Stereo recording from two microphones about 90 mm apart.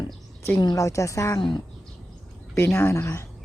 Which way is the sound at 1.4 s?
60° left (ahead or behind).